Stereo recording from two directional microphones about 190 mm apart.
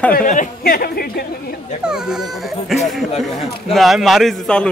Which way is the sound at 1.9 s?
5° right (ahead or behind).